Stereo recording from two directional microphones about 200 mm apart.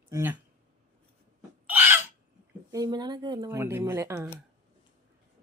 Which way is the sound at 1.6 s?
10° right (ahead or behind).